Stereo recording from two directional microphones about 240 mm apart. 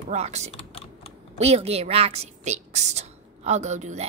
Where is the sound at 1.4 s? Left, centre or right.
Right.